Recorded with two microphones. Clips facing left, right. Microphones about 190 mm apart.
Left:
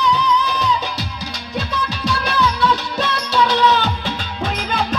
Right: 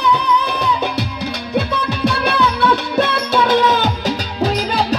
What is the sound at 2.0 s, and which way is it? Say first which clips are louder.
Music: right 3 dB; 60° right (ahead or behind).